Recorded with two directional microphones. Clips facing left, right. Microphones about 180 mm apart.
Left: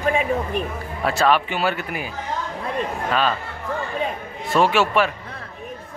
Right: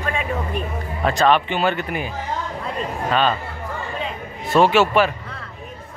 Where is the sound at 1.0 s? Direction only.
5° left (ahead or behind).